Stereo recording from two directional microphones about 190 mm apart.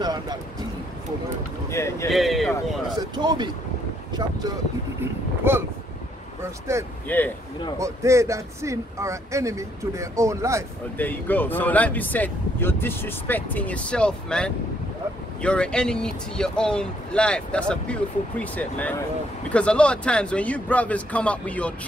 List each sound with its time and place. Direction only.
0.0 s speech: 20° right (ahead or behind)
1.7 s speech: 15° left (ahead or behind)
2.0 s speech: centre (ahead or behind)
3.0 s speech: 20° right (ahead or behind)
7.1 s speech: 10° left (ahead or behind)
7.8 s speech: 15° right (ahead or behind)
11.0 s speech: 10° left (ahead or behind)